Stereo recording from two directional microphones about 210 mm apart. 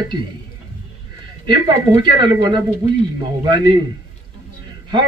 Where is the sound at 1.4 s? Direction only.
20° right (ahead or behind).